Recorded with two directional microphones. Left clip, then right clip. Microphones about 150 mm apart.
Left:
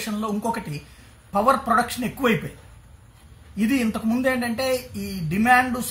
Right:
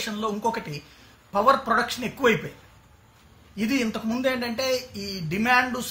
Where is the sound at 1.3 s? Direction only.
15° left (ahead or behind).